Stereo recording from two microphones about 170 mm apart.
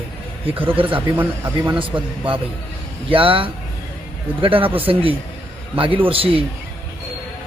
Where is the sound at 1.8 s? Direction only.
30° right (ahead or behind).